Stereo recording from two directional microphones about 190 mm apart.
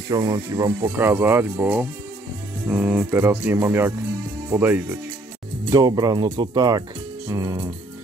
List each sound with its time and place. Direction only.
0.1 s speech: 20° right (ahead or behind)
5.7 s speech: 20° right (ahead or behind)